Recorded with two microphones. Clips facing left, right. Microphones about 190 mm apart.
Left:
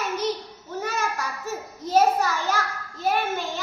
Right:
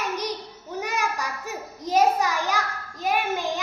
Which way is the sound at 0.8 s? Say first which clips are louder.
Even; 15° right (ahead or behind).